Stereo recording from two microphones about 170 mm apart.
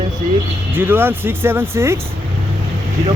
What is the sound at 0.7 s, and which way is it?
Speech, 10° right (ahead or behind).